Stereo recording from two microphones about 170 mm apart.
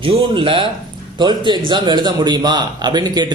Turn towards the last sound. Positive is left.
turn(degrees=-25)  # may be behind; listen again after turning